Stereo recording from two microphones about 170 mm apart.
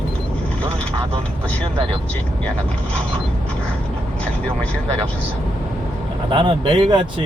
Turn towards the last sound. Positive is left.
turn(degrees=-30)  # may be behind; listen again after turning